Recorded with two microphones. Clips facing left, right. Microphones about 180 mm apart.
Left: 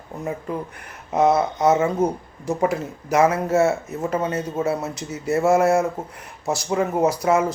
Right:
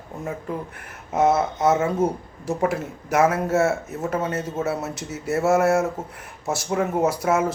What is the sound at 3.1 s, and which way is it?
Speech, 5° right (ahead or behind).